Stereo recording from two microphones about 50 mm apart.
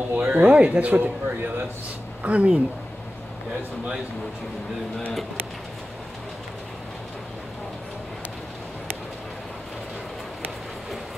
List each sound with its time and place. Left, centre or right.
0.1 s speech: right